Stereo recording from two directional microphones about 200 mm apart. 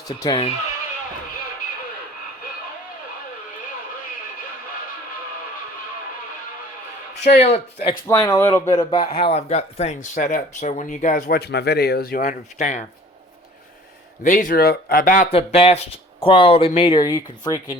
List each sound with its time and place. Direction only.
0.1 s speech: 20° left (ahead or behind)
7.4 s speech: 30° left (ahead or behind)
8.0 s speech: 10° left (ahead or behind); by 12.8 s 35° left (ahead or behind)
14.3 s speech: 40° left (ahead or behind)
15.3 s speech: 30° left (ahead or behind)